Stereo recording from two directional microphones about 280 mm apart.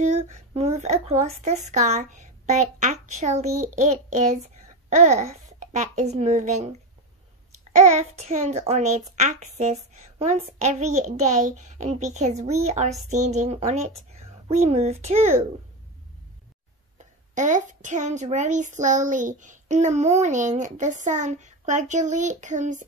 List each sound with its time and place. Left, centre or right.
0.0 s a child's voice: right
7.7 s a child's voice: right
17.0 s a child's voice: right